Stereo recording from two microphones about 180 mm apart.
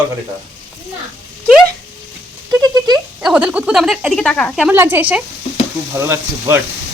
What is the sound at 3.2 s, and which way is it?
Speech, 5° right (ahead or behind).